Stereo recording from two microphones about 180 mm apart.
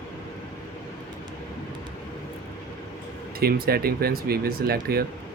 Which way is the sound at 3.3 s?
55° right (ahead or behind).